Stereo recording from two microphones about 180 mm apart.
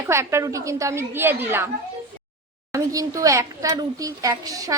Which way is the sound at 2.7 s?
20° right (ahead or behind).